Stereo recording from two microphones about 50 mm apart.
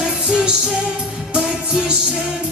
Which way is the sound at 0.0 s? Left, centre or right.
Centre.